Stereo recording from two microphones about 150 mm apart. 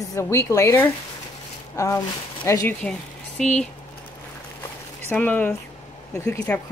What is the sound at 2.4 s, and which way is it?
Speech, 20° left (ahead or behind).